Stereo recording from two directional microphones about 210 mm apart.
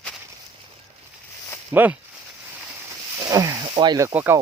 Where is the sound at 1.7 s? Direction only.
10° right (ahead or behind).